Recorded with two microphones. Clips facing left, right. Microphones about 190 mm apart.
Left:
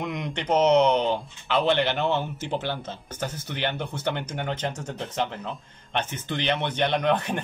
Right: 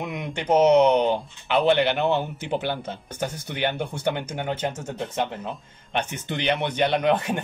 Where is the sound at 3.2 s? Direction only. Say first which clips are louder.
Right 2 dB; 55° right (ahead or behind).